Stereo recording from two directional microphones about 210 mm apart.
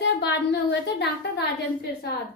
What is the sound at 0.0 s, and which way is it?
Speech, 55° left (ahead or behind).